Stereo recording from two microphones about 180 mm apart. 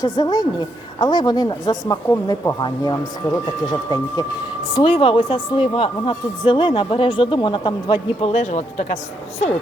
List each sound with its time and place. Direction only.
0.0 s a woman's voice: 25° left (ahead or behind)
8.2 s speech: 40° left (ahead or behind)